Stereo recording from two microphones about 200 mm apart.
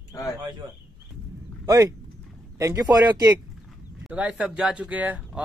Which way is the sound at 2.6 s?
15° right (ahead or behind).